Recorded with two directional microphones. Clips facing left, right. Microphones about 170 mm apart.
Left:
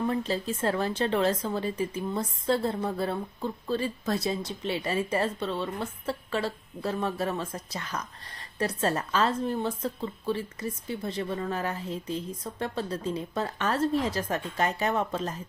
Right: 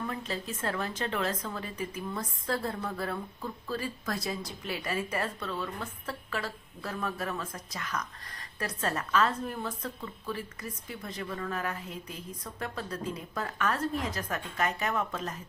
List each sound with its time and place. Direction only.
0.0 s speech: 30° left (ahead or behind)